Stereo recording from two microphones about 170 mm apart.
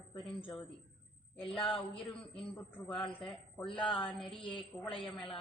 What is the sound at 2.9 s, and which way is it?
Speech, 30° left (ahead or behind).